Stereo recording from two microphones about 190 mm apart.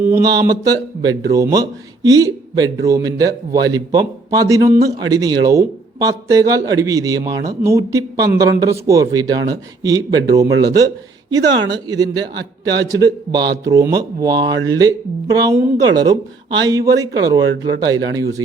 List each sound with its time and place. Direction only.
0.2 s a man's voice: 20° right (ahead or behind)